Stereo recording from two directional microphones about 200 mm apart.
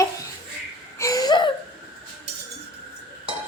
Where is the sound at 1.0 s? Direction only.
20° left (ahead or behind).